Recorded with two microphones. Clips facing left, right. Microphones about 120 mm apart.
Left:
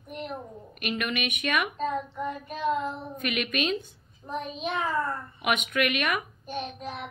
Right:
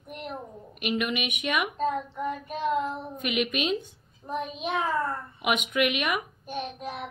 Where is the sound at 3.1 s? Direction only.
15° right (ahead or behind).